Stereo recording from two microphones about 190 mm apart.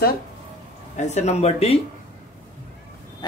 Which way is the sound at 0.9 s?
35° left (ahead or behind).